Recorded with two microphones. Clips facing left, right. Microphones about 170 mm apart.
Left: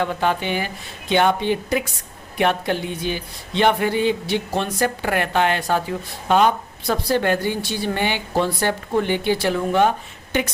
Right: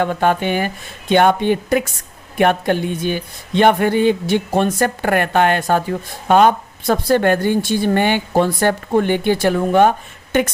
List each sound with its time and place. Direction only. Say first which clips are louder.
0.0 s speech: right 5 dB; 50° right (ahead or behind)